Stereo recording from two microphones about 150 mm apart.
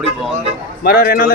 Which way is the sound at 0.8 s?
85° left.